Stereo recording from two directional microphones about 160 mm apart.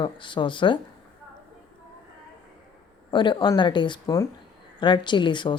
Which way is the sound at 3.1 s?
30° left (ahead or behind).